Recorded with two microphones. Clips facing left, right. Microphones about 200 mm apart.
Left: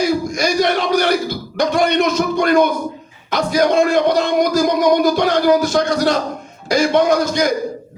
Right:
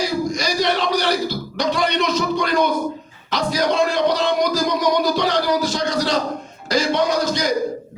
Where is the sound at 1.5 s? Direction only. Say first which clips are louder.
Left 6 dB; 50° left (ahead or behind).